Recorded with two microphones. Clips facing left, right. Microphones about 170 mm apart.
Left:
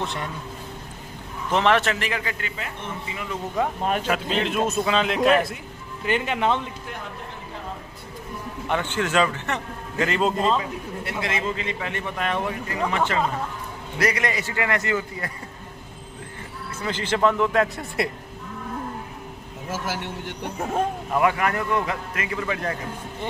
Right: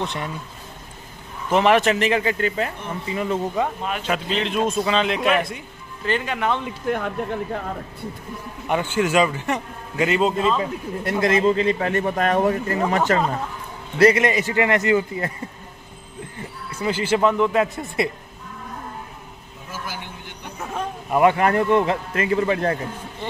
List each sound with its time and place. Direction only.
0.0 s a man's voice: centre (ahead or behind)
1.5 s a man's voice: 10° right (ahead or behind)
2.4 s a man's voice: 40° right (ahead or behind)
3.6 s a man's voice: centre (ahead or behind)
6.0 s speech: 20° left (ahead or behind)
6.9 s a man's voice: 45° right (ahead or behind)
8.6 s a man's voice: 10° right (ahead or behind)
10.6 s a man's voice: 40° right (ahead or behind)
13.9 s a man's voice: 25° right (ahead or behind)
16.8 s a man's voice: 10° right (ahead or behind)
19.7 s a man's voice: 80° left
21.1 s a man's voice: 25° right (ahead or behind)